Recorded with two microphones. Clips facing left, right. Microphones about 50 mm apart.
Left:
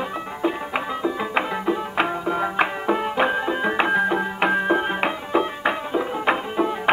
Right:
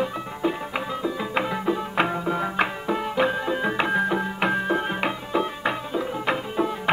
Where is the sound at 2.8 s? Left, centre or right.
Left.